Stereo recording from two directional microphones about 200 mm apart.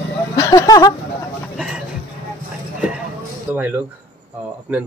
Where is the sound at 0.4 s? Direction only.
15° left (ahead or behind).